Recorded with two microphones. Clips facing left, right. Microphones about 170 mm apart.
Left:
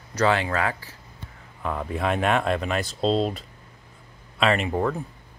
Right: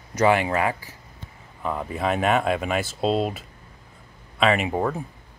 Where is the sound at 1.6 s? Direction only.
5° right (ahead or behind).